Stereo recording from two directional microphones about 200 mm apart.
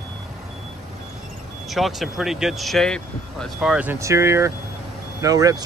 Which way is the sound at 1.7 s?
Centre (ahead or behind).